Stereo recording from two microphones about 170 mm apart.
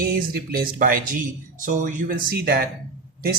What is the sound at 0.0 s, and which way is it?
Speech, 60° right (ahead or behind).